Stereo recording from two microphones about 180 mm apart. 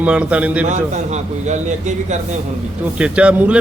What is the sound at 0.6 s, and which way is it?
A man's voice, 40° right (ahead or behind).